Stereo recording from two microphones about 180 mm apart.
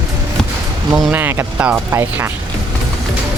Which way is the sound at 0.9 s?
5° right (ahead or behind).